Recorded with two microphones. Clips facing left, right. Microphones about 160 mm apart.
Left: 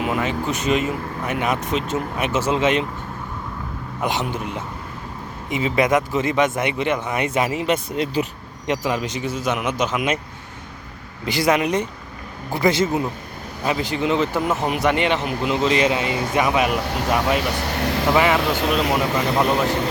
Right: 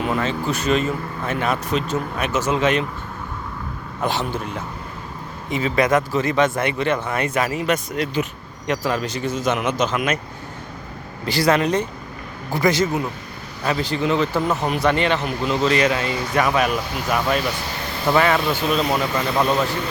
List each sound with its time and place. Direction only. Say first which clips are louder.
0.0 s speech: even; 15° left (ahead or behind)
4.0 s speech: right 1 dB; 20° left (ahead or behind)
11.3 s speech: right 1 dB; 20° left (ahead or behind)
17.4 s speech: left 4 dB; 70° left (ahead or behind)
18.1 s speech: right 1 dB; 15° left (ahead or behind)
18.4 s speech: even; 75° left (ahead or behind)
19.4 s speech: right 1 dB; 15° left (ahead or behind)